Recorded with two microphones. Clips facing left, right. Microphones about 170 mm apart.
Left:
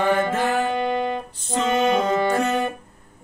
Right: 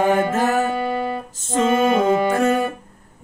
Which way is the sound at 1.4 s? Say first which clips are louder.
Right 8 dB; 45° right (ahead or behind).